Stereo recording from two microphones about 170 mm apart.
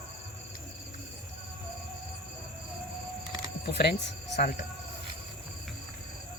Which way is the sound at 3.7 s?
85° left.